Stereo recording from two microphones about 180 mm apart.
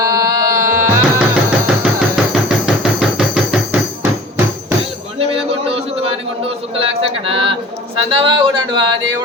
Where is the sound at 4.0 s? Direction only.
10° right (ahead or behind).